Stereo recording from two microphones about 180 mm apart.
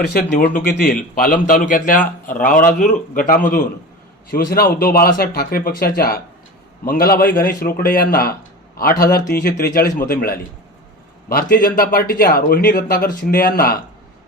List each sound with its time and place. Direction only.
0.2 s a man's voice: 50° left (ahead or behind)